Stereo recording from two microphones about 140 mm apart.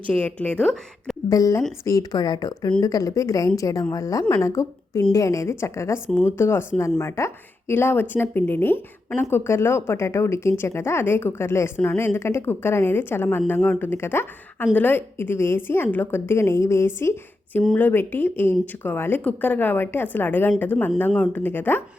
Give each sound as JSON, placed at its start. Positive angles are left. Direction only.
{"t": 0.1, "sound": "speech", "side_deg": 10}
{"t": 1.3, "sound": "a woman's voice", "side_deg": 25}